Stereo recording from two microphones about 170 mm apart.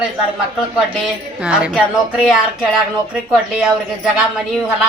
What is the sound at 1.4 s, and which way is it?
Speech, 5° right (ahead or behind).